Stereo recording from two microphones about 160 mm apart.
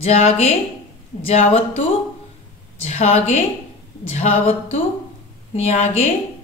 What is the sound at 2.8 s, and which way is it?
Speech, 40° left (ahead or behind).